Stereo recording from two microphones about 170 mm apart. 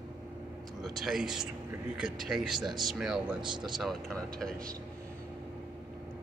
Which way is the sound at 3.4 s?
25° right (ahead or behind).